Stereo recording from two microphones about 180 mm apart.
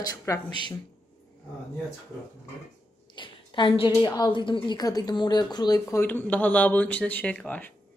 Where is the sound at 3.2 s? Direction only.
25° left (ahead or behind); by 7.7 s 10° left (ahead or behind).